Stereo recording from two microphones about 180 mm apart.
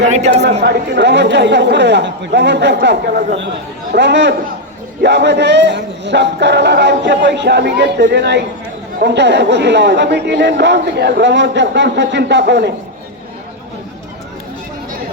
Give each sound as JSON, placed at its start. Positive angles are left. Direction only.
{"t": 0.0, "sound": "a woman's voice", "side_deg": -40}
{"t": 0.6, "sound": "speech", "side_deg": -70}